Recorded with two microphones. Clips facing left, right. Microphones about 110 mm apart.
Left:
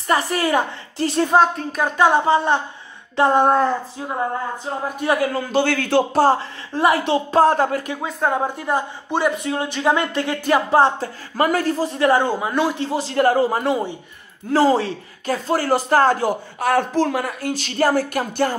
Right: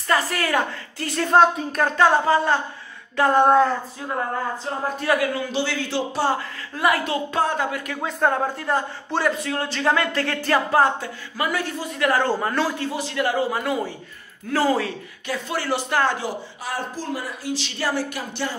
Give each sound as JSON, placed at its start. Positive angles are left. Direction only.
{"t": 0.1, "sound": "a man's voice", "side_deg": 20}
{"t": 1.3, "sound": "speech", "side_deg": 0}
{"t": 1.9, "sound": "a man's voice", "side_deg": 15}
{"t": 5.0, "sound": "a man's voice", "side_deg": 25}
{"t": 5.3, "sound": "speech", "side_deg": 50}
{"t": 6.2, "sound": "speech", "side_deg": 30}
{"t": 8.0, "sound": "speech", "side_deg": 5}
{"t": 11.3, "sound": "speech", "side_deg": 45}
{"t": 12.2, "sound": "a man's voice", "side_deg": 10}
{"t": 13.7, "sound": "a man's voice", "side_deg": 20}